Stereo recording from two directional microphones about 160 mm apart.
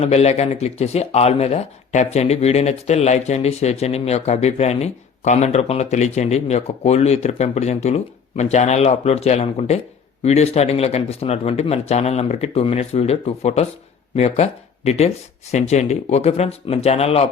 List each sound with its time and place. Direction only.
0.0 s speech: 40° left (ahead or behind)